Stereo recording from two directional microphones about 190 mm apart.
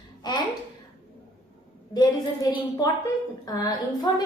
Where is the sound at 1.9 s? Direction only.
20° left (ahead or behind).